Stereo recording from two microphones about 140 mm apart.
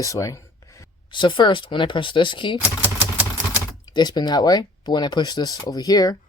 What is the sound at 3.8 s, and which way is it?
Speech, 30° left (ahead or behind).